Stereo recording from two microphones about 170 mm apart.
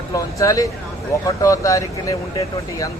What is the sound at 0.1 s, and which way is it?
Speech, 20° left (ahead or behind).